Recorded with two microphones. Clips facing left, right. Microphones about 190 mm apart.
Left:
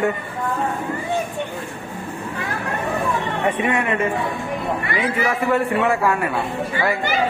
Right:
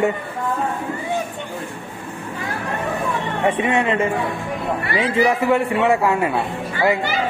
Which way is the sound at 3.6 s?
25° right (ahead or behind).